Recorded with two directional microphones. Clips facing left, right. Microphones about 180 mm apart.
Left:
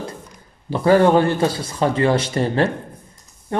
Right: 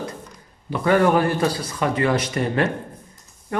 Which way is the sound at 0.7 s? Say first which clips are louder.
Left 4 dB; 30° left (ahead or behind).